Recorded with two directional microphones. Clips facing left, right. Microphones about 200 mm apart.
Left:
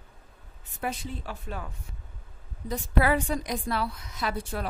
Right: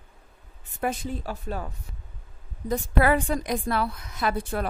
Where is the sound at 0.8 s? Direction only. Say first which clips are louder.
Right 5 dB; 45° right (ahead or behind).